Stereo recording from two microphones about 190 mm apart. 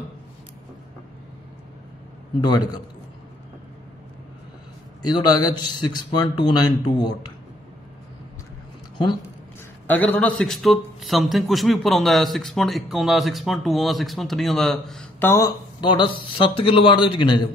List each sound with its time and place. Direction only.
2.4 s speech: 20° left (ahead or behind)
5.0 s speech: 20° left (ahead or behind)
8.9 s speech: 25° left (ahead or behind)
9.8 s a man's voice: 10° left (ahead or behind); by 17.4 s 25° left (ahead or behind)